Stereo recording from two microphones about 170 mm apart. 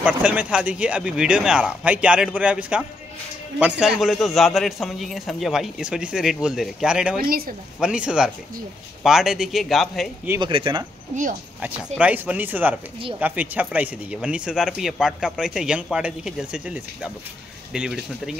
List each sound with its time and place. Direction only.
0.0 s speech: 5° right (ahead or behind)
7.2 s speech: 60° right (ahead or behind)
7.8 s speech: 5° right (ahead or behind)
10.4 s speech: 30° right (ahead or behind)
11.6 s speech: 10° right (ahead or behind)